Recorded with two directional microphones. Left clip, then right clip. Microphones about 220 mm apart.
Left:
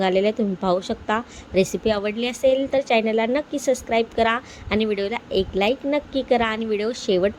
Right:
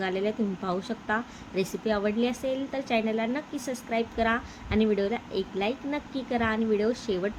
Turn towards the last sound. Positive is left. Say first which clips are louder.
# left 7 dB
turn(degrees=30)  # may be behind; listen again after turning